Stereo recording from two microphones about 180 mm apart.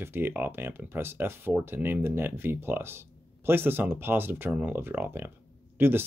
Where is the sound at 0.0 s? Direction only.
10° right (ahead or behind).